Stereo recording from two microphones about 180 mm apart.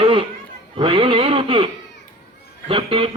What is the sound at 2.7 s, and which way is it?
Speech, 30° right (ahead or behind).